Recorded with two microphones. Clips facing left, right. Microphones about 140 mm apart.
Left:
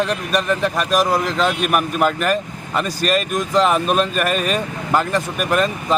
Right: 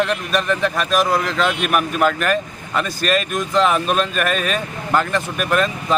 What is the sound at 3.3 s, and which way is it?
Speech, 35° left (ahead or behind).